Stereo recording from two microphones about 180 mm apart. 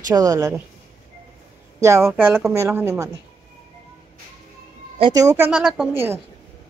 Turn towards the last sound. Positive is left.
turn(degrees=-10)  # may be behind; listen again after turning